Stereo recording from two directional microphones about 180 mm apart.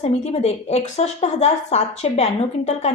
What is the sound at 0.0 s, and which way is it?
A woman's voice, 35° left (ahead or behind).